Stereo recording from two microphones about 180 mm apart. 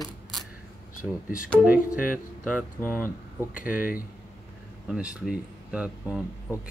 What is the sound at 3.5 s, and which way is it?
Speech, 50° left (ahead or behind).